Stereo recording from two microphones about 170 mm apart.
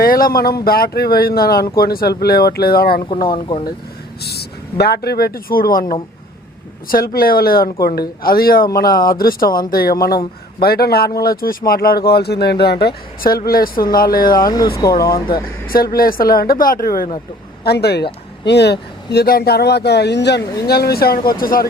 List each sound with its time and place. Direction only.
0.0 s speech: 60° left (ahead or behind)
3.2 s speech: 30° left (ahead or behind)
4.2 s speech: 70° left (ahead or behind)
6.8 s speech: 60° left (ahead or behind)
14.4 s speech: 20° left (ahead or behind)
15.6 s speech: 60° left (ahead or behind)
17.6 s a man's voice: 70° left (ahead or behind)